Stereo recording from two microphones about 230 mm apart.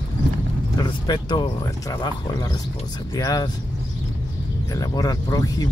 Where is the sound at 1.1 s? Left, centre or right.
Centre.